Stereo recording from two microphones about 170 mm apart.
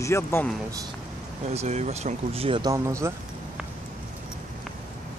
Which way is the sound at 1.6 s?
40° right (ahead or behind).